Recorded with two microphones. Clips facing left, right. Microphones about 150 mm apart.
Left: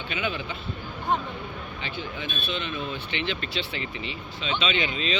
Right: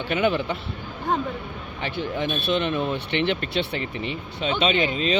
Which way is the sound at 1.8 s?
65° right (ahead or behind).